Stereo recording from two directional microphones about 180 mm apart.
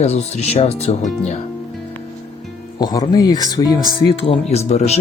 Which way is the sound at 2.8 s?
20° left (ahead or behind).